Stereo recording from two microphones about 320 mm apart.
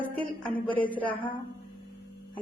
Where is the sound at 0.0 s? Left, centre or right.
Centre.